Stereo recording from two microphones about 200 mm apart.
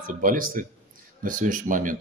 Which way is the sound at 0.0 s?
45° right (ahead or behind).